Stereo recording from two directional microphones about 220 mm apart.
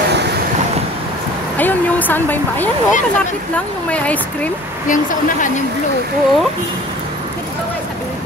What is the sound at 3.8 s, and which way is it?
Speech, 5° left (ahead or behind).